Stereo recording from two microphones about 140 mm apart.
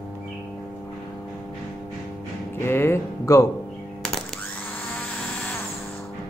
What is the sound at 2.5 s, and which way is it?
Speech, 15° left (ahead or behind).